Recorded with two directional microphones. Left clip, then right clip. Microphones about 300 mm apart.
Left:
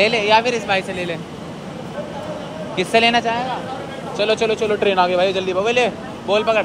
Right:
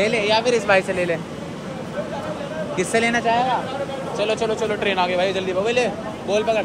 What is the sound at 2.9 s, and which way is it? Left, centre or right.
Speech, centre.